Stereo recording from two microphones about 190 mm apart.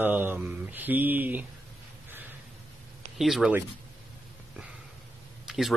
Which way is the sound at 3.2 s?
5° right (ahead or behind).